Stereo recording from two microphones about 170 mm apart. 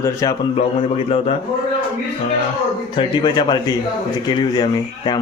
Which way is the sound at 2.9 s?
30° left (ahead or behind).